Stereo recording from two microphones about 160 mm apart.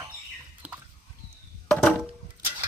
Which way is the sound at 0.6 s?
10° right (ahead or behind).